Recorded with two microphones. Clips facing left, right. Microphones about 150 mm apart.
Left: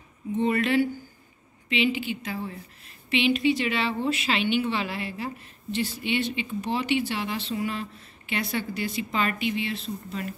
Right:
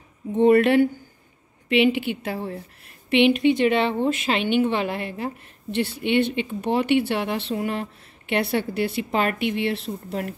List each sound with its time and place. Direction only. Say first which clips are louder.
0.3 s a woman's voice: right 8 dB; 60° right (ahead or behind)